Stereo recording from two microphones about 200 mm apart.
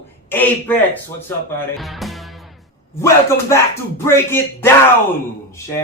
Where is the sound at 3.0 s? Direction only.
15° left (ahead or behind).